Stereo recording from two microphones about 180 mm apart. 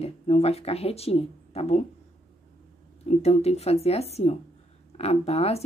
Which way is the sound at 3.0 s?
35° left (ahead or behind).